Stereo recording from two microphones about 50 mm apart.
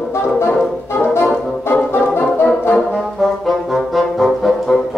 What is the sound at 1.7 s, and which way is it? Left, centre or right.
Music, left.